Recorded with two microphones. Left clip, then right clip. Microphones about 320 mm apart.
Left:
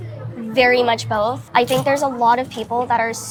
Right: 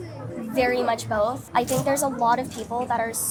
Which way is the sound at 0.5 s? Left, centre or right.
Left.